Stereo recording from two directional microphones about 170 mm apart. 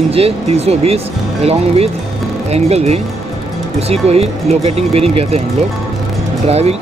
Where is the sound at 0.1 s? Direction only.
35° right (ahead or behind).